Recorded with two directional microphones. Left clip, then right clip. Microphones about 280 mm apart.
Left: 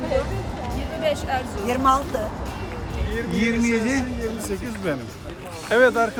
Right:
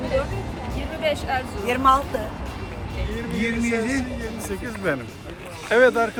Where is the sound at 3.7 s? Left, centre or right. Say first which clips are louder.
Left 1 dB; centre.